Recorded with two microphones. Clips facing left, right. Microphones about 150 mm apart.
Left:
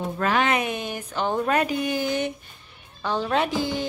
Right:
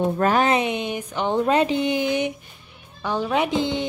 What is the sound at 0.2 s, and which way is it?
Speech, 40° right (ahead or behind).